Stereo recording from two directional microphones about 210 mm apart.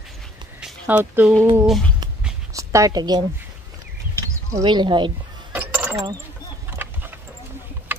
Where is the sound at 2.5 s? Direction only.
15° right (ahead or behind).